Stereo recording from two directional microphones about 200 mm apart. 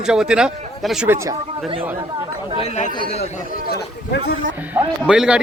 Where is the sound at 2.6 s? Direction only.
35° left (ahead or behind).